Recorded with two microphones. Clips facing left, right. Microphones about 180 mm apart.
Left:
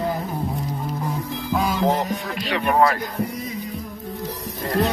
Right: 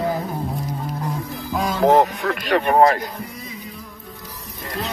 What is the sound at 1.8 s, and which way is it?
Music, 60° right (ahead or behind).